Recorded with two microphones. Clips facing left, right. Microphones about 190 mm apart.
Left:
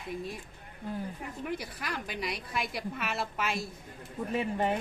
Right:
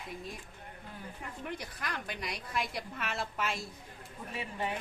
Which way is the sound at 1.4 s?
5° left (ahead or behind).